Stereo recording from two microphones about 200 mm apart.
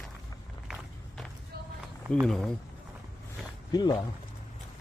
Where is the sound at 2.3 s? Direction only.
Centre (ahead or behind).